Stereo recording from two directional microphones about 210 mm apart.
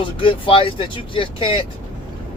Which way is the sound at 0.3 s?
25° left (ahead or behind).